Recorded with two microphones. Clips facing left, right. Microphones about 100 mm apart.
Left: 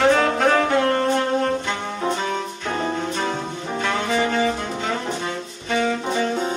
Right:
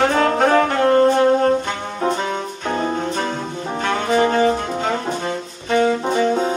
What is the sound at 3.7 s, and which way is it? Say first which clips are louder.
Brass instrument: right 4 dB; 45° right (ahead or behind).